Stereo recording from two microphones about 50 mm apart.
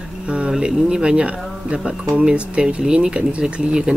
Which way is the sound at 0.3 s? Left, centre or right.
Centre.